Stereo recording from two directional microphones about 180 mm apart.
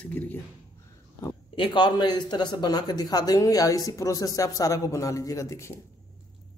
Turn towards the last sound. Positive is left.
turn(degrees=15)  # may be behind; listen again after turning